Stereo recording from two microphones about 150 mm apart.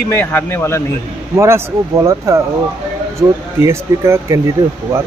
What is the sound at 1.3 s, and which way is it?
Speech, 20° right (ahead or behind).